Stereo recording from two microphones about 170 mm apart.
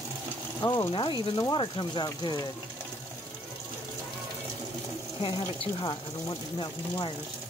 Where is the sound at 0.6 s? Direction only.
25° left (ahead or behind).